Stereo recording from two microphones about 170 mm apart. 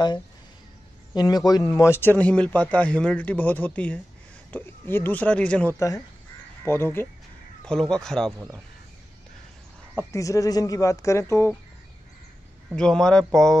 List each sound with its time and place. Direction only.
1.1 s a man's voice: 25° left (ahead or behind); by 5.8 s 5° left (ahead or behind)
5.8 s speech: 15° left (ahead or behind)
7.9 s speech: 5° left (ahead or behind)
8.3 s speech: 15° right (ahead or behind)
10.1 s speech: 20° left (ahead or behind)
12.6 s speech: 5° left (ahead or behind)